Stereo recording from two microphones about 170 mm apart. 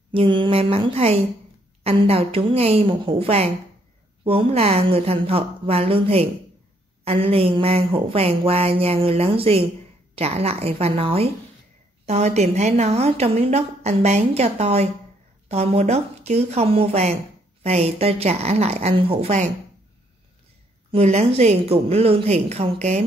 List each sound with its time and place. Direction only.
0.1 s a woman's voice: 30° right (ahead or behind)
20.9 s a woman's voice: 35° right (ahead or behind)